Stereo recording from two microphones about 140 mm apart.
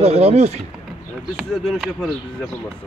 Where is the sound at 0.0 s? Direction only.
50° right (ahead or behind).